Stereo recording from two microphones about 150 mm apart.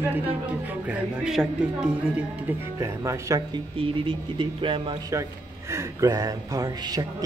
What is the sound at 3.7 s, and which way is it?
Speech, 35° right (ahead or behind).